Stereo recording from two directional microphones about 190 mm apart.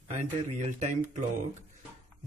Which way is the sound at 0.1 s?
35° right (ahead or behind).